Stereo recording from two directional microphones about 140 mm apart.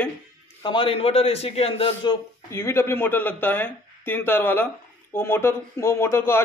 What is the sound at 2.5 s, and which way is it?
Speech, 20° left (ahead or behind).